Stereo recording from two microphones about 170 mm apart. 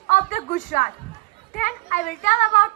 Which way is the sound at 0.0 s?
50° left (ahead or behind).